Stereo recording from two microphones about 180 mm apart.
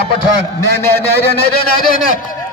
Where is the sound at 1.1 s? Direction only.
60° left (ahead or behind).